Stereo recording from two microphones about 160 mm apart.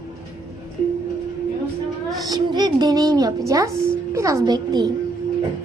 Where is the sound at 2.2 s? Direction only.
25° right (ahead or behind).